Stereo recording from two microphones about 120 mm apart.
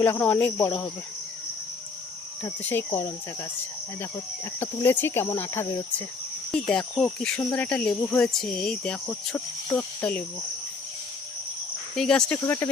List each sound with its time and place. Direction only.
0.0 s speech: 15° left (ahead or behind)
2.4 s speech: 15° left (ahead or behind)
4.6 s speech: 20° left (ahead or behind)
6.5 s speech: 5° left (ahead or behind)
11.9 s speech: 5° left (ahead or behind)
12.4 s speech: 20° left (ahead or behind)